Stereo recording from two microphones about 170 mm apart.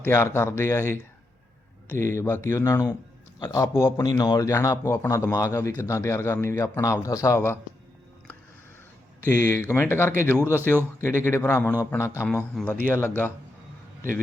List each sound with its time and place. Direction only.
0.0 s a man's voice: 15° left (ahead or behind)
9.2 s a man's voice: 15° left (ahead or behind)
12.3 s a man's voice: 5° left (ahead or behind)